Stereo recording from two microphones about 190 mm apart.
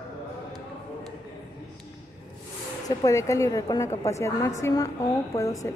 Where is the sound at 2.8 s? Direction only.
20° left (ahead or behind).